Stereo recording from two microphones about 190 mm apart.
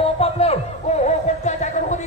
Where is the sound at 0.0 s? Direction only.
30° left (ahead or behind).